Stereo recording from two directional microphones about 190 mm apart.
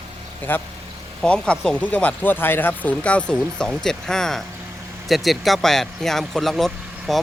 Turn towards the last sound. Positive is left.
turn(degrees=0)  # may be behind; listen again after turning